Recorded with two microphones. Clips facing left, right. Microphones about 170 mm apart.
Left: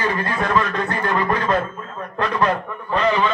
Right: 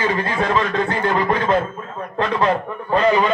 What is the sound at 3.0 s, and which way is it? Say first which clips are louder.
Speech: right 2 dB; 40° right (ahead or behind).